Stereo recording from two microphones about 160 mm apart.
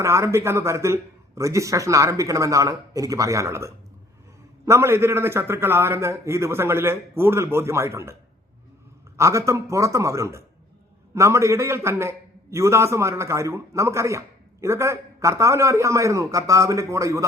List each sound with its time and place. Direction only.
0.0 s a man's voice: 20° right (ahead or behind)
9.1 s a man's voice: 20° right (ahead or behind)